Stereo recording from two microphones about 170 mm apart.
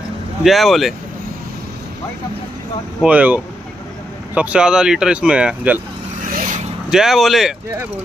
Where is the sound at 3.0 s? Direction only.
10° right (ahead or behind).